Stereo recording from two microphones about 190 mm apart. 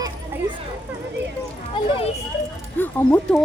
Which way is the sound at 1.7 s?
30° left (ahead or behind).